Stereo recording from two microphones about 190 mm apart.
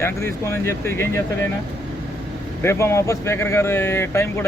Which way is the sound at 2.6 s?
15° left (ahead or behind).